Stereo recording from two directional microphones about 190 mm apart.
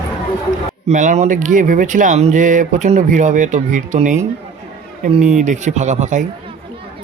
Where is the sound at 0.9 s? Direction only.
40° right (ahead or behind).